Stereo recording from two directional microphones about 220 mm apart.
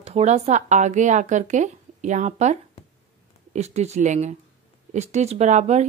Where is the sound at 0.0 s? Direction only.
30° right (ahead or behind).